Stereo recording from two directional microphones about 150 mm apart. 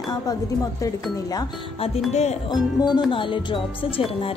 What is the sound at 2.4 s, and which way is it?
A woman's voice, 30° left (ahead or behind).